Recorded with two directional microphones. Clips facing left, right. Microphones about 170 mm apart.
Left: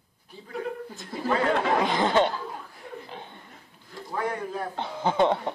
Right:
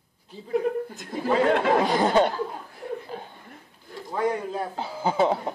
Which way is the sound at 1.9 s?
40° right (ahead or behind).